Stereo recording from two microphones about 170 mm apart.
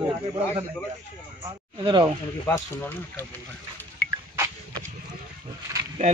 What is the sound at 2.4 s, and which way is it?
Speech, 15° left (ahead or behind).